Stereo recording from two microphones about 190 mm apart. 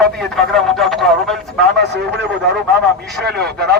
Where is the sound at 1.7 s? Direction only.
65° right (ahead or behind).